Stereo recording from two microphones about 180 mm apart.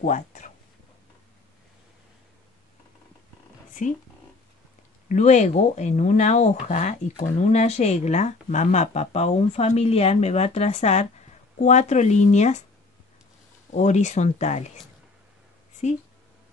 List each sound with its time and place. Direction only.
0.0 s speech: 45° left (ahead or behind)
3.8 s speech: 45° left (ahead or behind)
5.0 s speech: 40° left (ahead or behind)
13.7 s speech: 40° left (ahead or behind)
15.8 s speech: 40° left (ahead or behind)